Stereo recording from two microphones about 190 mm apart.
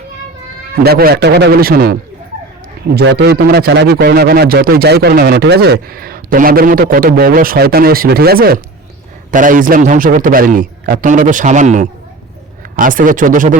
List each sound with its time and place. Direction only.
0.8 s a man's voice: 55° right (ahead or behind)